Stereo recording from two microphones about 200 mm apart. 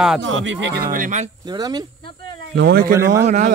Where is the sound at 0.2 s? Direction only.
70° right (ahead or behind).